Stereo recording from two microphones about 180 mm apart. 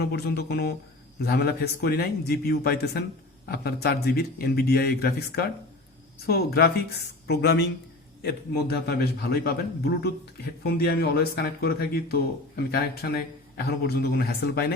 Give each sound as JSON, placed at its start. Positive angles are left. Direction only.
{"t": 0.0, "sound": "speech", "side_deg": 65}